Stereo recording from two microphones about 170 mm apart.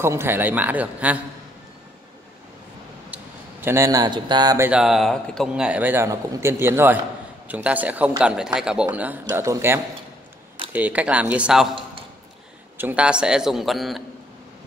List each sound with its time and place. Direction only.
0.0 s a man's voice: 15° right (ahead or behind)
3.6 s a man's voice: 15° right (ahead or behind)
4.6 s a man's voice: 5° right (ahead or behind)
12.7 s a man's voice: 10° right (ahead or behind)